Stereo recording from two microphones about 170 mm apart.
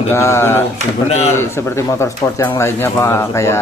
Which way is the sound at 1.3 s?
15° left (ahead or behind).